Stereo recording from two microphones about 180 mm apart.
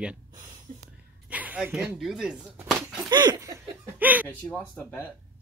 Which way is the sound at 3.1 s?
20° right (ahead or behind).